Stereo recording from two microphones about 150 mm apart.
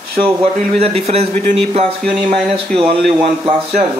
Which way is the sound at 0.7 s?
45° right (ahead or behind).